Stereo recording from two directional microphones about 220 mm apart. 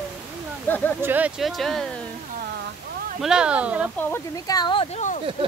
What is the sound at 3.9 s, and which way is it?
Speech, 10° left (ahead or behind).